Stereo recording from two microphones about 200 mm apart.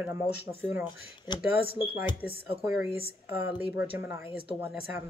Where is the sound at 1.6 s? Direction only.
50° left (ahead or behind).